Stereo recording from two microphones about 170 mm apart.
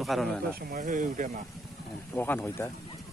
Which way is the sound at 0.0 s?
Centre (ahead or behind).